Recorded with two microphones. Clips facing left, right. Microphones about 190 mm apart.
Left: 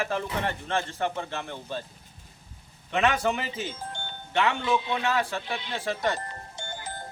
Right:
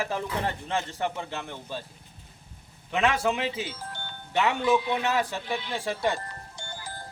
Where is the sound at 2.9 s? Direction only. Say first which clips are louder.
Even; 5° right (ahead or behind).